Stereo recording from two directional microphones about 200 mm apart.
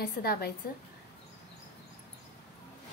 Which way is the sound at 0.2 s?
50° left (ahead or behind).